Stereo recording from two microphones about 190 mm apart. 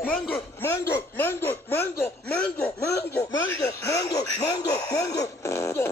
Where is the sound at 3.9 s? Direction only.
20° left (ahead or behind).